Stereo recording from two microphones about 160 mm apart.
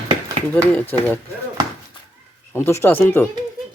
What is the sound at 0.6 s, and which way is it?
Speech, 10° left (ahead or behind).